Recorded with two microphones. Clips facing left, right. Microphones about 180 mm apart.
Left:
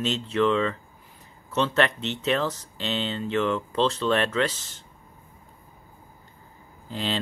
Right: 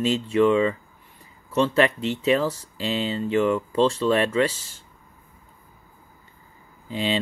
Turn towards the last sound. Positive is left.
turn(degrees=-5)  # may be behind; listen again after turning